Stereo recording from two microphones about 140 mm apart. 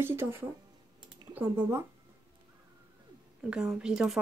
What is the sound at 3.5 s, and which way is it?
Speech, 5° right (ahead or behind).